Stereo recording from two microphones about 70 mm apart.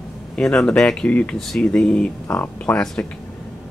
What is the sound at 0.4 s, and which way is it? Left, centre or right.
Speech, centre.